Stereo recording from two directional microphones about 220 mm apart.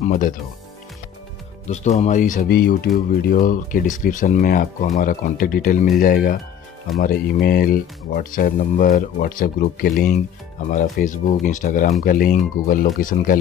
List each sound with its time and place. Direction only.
0.0 s speech: 35° left (ahead or behind)
1.7 s speech: 30° left (ahead or behind)